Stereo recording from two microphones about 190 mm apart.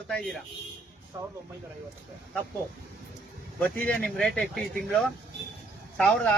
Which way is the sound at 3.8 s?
5° left (ahead or behind).